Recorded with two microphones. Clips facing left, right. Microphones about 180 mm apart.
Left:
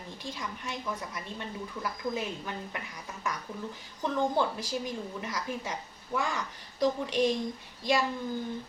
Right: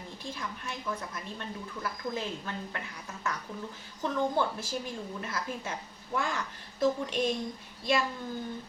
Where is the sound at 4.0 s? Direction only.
15° left (ahead or behind).